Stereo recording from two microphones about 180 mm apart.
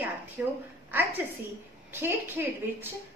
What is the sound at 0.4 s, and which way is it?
Speech, 10° right (ahead or behind).